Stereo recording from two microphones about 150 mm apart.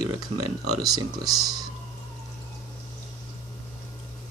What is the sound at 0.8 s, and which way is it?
Speech, 25° right (ahead or behind).